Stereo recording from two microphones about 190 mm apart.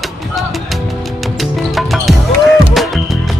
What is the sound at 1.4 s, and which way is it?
Music, centre (ahead or behind).